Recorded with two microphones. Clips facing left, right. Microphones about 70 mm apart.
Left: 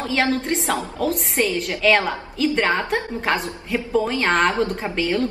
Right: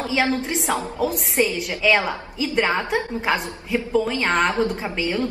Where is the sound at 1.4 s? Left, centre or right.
Centre.